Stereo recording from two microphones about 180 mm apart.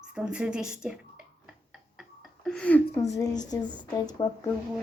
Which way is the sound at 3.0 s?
20° left (ahead or behind).